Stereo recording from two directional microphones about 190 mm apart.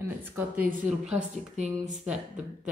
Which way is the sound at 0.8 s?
5° right (ahead or behind).